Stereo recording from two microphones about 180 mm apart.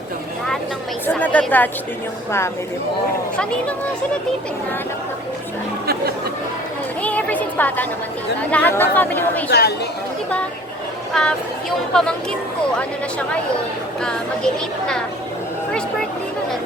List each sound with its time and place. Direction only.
1.0 s speech: 10° left (ahead or behind)
3.3 s speech: 5° left (ahead or behind)
5.8 s chatter: 60° right (ahead or behind)
7.0 s a sound: 10° left (ahead or behind)
8.4 s speech: 10° left (ahead or behind)
9.5 s speech: 65° left (ahead or behind)
11.1 s speech: 5° left (ahead or behind)
14.0 s speech: 5° left (ahead or behind)